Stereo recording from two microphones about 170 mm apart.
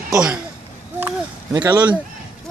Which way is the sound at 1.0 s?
15° right (ahead or behind).